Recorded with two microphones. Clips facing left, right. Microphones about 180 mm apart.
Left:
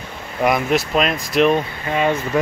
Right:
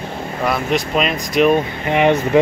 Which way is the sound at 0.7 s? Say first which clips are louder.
Even; centre (ahead or behind).